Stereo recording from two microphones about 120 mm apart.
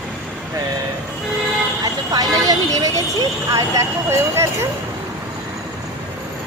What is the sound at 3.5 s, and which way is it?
Speech, 30° right (ahead or behind).